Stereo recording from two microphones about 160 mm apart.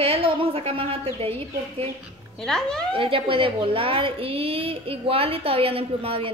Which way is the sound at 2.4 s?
5° left (ahead or behind).